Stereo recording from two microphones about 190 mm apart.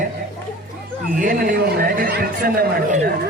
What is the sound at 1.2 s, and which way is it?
A man's voice, 45° right (ahead or behind).